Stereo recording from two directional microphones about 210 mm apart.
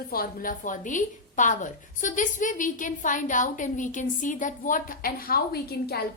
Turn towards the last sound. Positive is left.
turn(degrees=45)  # may be behind; listen again after turning